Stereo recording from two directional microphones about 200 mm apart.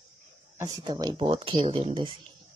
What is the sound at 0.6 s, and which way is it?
Speech, 20° right (ahead or behind).